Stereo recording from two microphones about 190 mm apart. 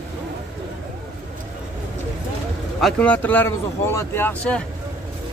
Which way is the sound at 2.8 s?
5° left (ahead or behind).